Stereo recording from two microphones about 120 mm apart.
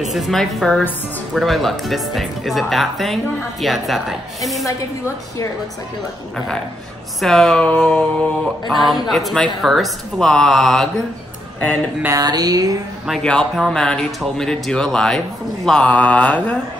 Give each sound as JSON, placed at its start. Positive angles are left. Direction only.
{"t": 0.0, "sound": "speech", "side_deg": 0}
{"t": 7.2, "sound": "speech", "side_deg": 5}
{"t": 12.1, "sound": "speech", "side_deg": -30}
{"t": 13.0, "sound": "speech", "side_deg": 5}